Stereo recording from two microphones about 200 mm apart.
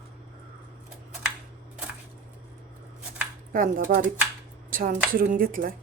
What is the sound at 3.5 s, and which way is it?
Speech, 40° right (ahead or behind).